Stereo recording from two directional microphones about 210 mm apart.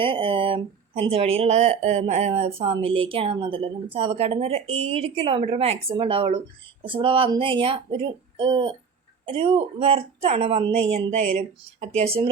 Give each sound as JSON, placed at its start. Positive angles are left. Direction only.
{"t": 0.0, "sound": "speech", "side_deg": -25}